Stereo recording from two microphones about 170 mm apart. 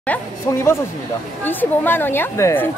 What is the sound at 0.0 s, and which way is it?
Speech, 10° left (ahead or behind).